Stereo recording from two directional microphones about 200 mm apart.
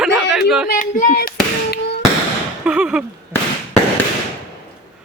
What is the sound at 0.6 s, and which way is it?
Speech, 45° left (ahead or behind).